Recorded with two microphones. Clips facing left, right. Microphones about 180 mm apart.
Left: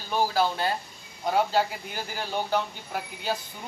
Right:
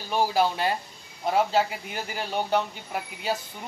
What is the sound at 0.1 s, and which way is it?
Speech, 10° right (ahead or behind).